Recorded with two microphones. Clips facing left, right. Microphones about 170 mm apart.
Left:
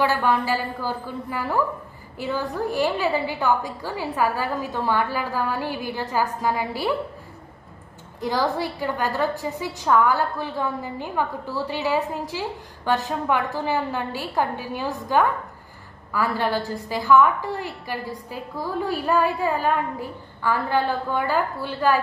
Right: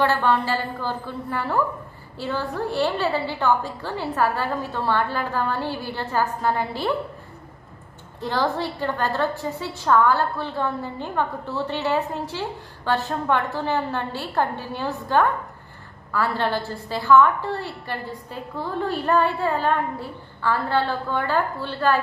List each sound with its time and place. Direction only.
0.0 s a woman's voice: 10° left (ahead or behind)
8.5 s a woman's voice: 10° left (ahead or behind)